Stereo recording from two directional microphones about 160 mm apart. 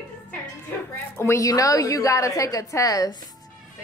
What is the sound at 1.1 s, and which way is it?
A woman's voice, 15° left (ahead or behind).